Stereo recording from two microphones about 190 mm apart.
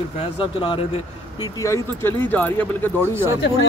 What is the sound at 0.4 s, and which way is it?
Speech, 25° left (ahead or behind).